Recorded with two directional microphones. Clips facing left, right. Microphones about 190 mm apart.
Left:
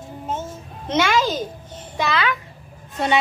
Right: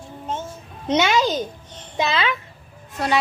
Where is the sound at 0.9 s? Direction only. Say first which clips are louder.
Right 1 dB; 20° right (ahead or behind).